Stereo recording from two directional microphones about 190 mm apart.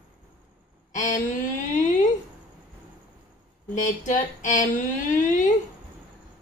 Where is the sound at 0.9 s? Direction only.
40° left (ahead or behind).